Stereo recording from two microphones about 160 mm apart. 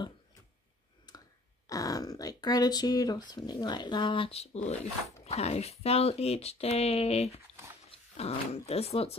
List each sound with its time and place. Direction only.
1.7 s speech: 20° left (ahead or behind); by 9.1 s 40° left (ahead or behind)